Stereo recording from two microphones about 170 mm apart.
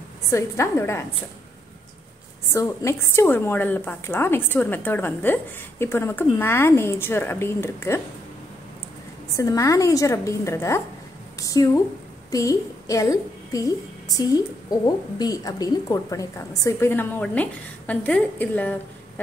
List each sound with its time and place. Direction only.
0.3 s a woman's voice: 15° left (ahead or behind)
2.5 s a woman's voice: 15° left (ahead or behind)
9.4 s a woman's voice: 20° left (ahead or behind)